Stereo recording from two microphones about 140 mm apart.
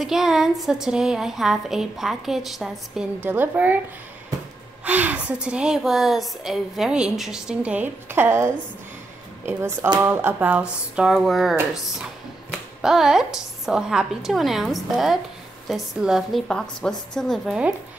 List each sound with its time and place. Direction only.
0.0 s a woman's voice: centre (ahead or behind)
3.3 s a woman's voice: 15° right (ahead or behind)
4.8 s a woman's voice: 10° right (ahead or behind)
9.5 s a woman's voice: 20° right (ahead or behind); by 17.6 s centre (ahead or behind)